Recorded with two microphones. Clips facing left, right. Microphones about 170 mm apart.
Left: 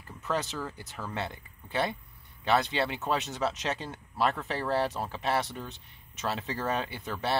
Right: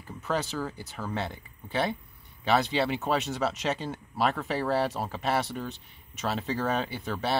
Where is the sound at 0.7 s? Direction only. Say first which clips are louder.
Right 3 dB; 5° right (ahead or behind).